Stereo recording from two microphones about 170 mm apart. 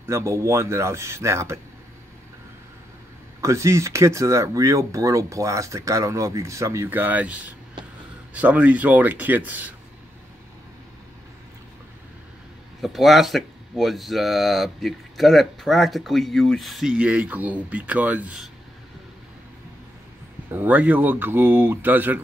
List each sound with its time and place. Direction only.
0.0 s speech: 15° right (ahead or behind)
3.3 s speech: 15° right (ahead or behind)
12.8 s speech: centre (ahead or behind)
20.5 s speech: 10° right (ahead or behind)